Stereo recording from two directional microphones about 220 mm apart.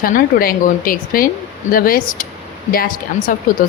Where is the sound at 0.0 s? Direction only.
40° left (ahead or behind).